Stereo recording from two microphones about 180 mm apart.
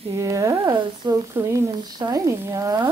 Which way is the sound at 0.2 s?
20° right (ahead or behind).